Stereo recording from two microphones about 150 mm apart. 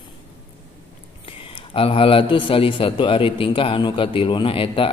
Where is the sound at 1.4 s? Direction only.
35° left (ahead or behind).